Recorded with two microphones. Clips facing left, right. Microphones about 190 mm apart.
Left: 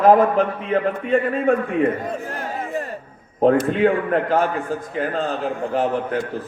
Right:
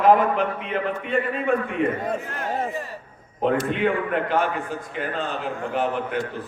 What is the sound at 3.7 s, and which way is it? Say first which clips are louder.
A man's voice: left 5 dB; 40° left (ahead or behind).